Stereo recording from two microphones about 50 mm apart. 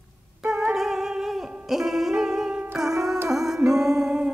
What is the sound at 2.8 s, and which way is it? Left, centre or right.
Music, centre.